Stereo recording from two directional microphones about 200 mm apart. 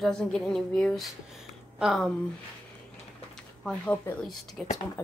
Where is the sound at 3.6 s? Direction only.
5° left (ahead or behind).